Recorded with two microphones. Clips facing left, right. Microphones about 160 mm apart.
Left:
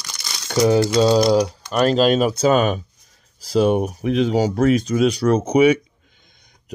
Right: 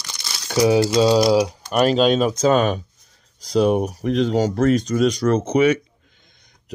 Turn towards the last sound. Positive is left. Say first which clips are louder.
# left 2 dB
turn(degrees=10)  # may be behind; listen again after turning